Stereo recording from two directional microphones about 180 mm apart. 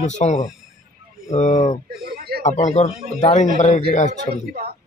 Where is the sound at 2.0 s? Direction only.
60° right (ahead or behind).